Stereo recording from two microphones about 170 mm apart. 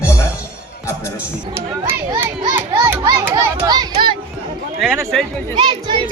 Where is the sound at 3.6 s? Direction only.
25° right (ahead or behind).